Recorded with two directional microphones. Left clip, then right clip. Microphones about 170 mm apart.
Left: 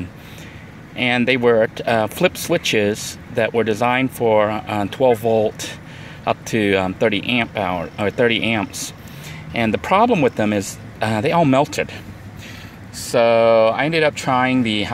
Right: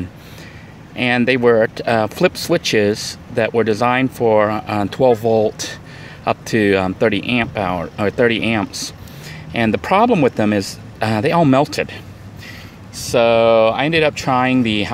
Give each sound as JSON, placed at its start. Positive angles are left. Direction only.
{"t": 0.9, "sound": "speech", "side_deg": -15}